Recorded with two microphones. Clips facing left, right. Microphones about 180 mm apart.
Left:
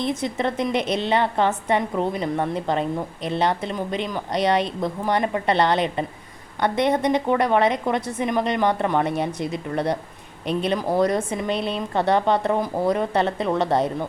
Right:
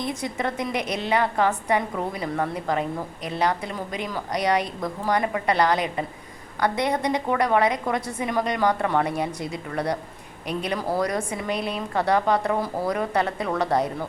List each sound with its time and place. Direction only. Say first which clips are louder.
0.0 s speech: left 4 dB; 25° left (ahead or behind)